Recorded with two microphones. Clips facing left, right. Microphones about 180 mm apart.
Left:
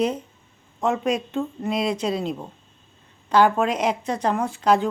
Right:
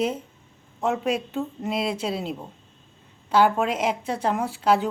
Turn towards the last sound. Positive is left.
turn(degrees=-5)  # may be behind; listen again after turning